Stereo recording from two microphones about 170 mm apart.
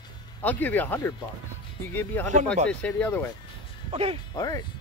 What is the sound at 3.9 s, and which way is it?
Music, 35° right (ahead or behind).